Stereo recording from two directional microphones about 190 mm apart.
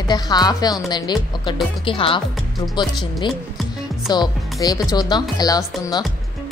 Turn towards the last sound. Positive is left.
turn(degrees=20)  # may be behind; listen again after turning